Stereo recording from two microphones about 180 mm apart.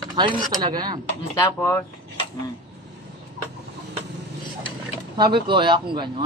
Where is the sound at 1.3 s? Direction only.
15° left (ahead or behind).